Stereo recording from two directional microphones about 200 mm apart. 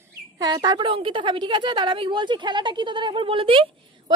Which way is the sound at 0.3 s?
20° right (ahead or behind).